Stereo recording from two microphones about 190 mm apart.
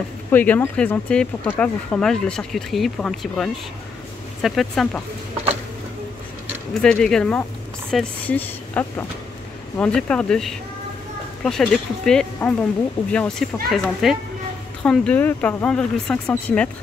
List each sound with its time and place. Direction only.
0.3 s speech: 10° left (ahead or behind)
6.7 s speech: 5° left (ahead or behind)